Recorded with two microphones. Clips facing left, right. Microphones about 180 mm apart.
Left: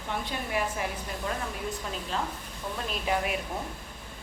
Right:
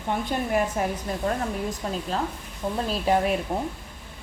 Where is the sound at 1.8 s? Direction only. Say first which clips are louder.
Right 6 dB; 40° right (ahead or behind).